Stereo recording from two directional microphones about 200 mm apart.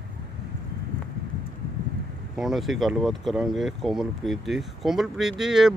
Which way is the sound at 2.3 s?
Centre (ahead or behind).